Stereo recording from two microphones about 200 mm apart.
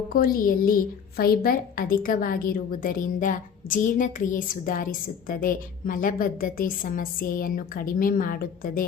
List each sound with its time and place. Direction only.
0.1 s a woman's voice: 45° left (ahead or behind)